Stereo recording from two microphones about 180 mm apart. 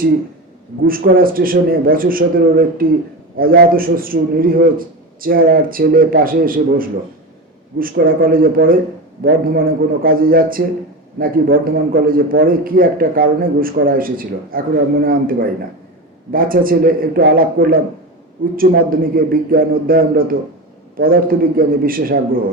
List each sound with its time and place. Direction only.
0.9 s a man's voice: 55° right (ahead or behind)